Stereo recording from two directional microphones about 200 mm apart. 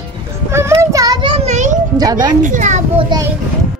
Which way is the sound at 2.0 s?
20° right (ahead or behind).